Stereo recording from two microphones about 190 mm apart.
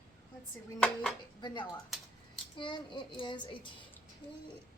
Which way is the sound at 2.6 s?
25° left (ahead or behind).